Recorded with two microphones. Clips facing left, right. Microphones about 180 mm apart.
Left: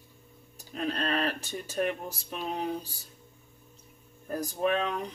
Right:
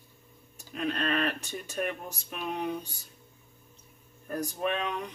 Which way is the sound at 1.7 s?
35° left (ahead or behind).